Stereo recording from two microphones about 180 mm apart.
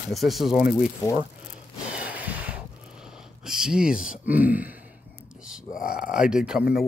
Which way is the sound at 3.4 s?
5° right (ahead or behind).